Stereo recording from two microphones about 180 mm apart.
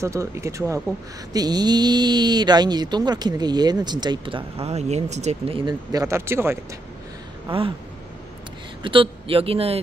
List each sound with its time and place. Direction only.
0.0 s speech: 15° right (ahead or behind)
7.4 s speech: 30° right (ahead or behind)
8.8 s speech: 30° right (ahead or behind)